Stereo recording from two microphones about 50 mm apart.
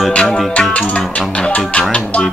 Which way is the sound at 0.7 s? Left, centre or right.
Left.